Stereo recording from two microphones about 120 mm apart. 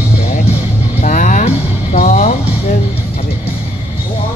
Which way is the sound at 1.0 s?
90° left.